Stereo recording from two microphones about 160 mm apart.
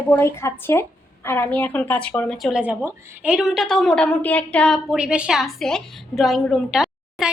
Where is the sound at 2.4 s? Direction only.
5° right (ahead or behind).